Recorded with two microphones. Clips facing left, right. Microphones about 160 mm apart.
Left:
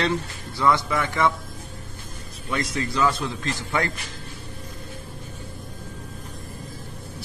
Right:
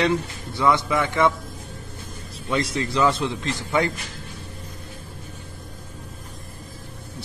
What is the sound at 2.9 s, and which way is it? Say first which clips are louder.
Speech: right 3 dB; 25° right (ahead or behind).